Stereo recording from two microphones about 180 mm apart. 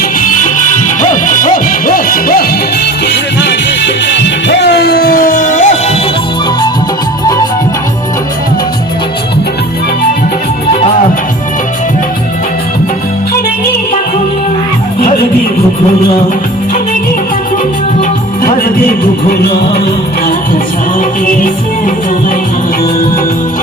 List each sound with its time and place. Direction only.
0.0 s music: 45° left (ahead or behind)
3.1 s music: 70° left (ahead or behind); by 6.0 s 45° left (ahead or behind)
18.4 s music: 55° left (ahead or behind)
21.2 s music: 50° left (ahead or behind)